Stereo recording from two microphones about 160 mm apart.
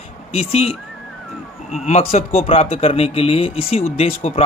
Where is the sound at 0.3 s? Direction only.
40° left (ahead or behind).